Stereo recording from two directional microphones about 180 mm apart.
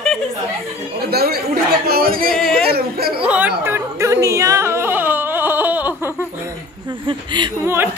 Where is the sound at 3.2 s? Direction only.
5° right (ahead or behind).